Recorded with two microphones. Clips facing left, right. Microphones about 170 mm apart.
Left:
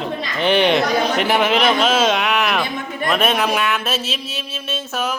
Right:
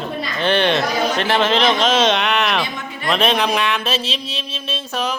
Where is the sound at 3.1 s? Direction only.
5° left (ahead or behind).